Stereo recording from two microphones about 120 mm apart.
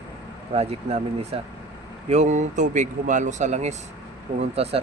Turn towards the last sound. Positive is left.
turn(degrees=-55)  # may be behind; listen again after turning